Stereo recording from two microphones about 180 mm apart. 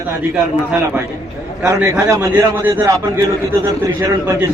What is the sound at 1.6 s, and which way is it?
A man's voice, 15° right (ahead or behind).